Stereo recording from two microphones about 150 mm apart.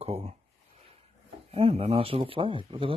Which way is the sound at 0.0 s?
40° right (ahead or behind).